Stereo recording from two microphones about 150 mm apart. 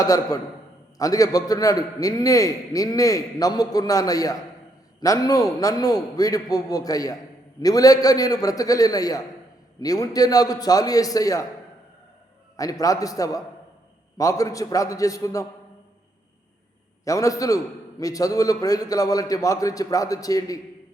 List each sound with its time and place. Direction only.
0.0 s a man's voice: 25° left (ahead or behind)
12.8 s a man's voice: 25° left (ahead or behind)
17.1 s a man's voice: 20° left (ahead or behind)